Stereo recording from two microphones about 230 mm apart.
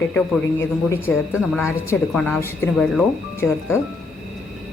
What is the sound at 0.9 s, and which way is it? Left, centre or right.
Speech, centre.